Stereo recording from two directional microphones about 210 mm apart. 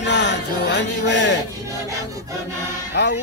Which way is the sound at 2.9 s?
55° left (ahead or behind).